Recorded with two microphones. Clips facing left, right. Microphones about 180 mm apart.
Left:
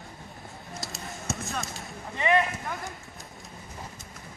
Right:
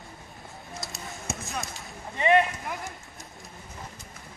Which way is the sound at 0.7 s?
Centre (ahead or behind).